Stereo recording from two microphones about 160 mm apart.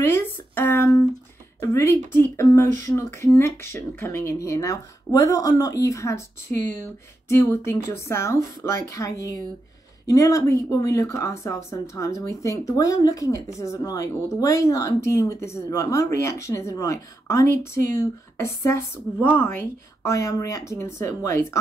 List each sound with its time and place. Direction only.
0.0 s a woman's voice: 15° left (ahead or behind)